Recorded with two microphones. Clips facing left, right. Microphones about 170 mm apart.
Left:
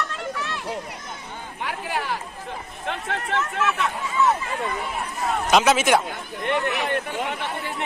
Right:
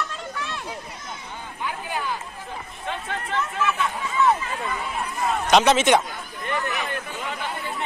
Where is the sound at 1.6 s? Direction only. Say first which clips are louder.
Left 1 dB; 75° left (ahead or behind).